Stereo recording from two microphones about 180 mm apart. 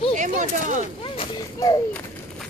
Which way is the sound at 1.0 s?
25° left (ahead or behind).